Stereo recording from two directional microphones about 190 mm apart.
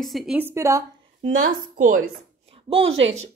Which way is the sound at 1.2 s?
40° right (ahead or behind).